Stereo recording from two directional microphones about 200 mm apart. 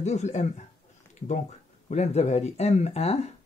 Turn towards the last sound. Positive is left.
turn(degrees=30)  # may be behind; listen again after turning